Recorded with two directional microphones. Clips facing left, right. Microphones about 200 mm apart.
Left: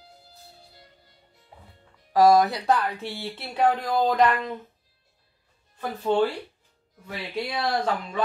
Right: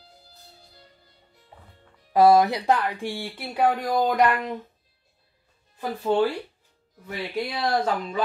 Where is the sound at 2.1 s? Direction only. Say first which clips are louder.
Right 1 dB; 15° right (ahead or behind).